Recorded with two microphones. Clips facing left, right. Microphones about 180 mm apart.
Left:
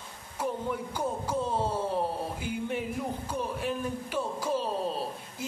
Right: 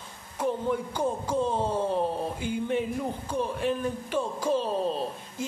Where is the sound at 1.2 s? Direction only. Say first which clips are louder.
Right 3 dB; 10° left (ahead or behind).